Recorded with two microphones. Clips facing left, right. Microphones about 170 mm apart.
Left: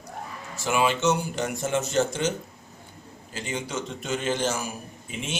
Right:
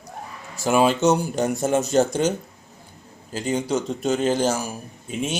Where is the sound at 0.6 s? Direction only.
40° right (ahead or behind).